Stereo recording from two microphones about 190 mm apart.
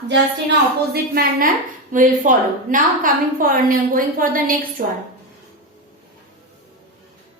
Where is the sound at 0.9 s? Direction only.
55° right (ahead or behind).